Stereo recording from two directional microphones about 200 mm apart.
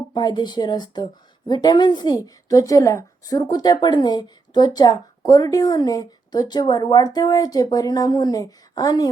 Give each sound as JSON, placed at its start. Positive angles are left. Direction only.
{"t": 0.1, "sound": "a woman's voice", "side_deg": 20}